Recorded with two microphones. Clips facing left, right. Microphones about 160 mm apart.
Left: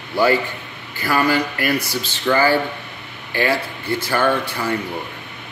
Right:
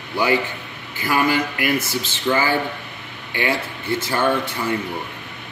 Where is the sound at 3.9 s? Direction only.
25° right (ahead or behind).